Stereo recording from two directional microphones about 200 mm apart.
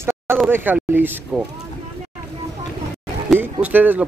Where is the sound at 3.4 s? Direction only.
10° right (ahead or behind).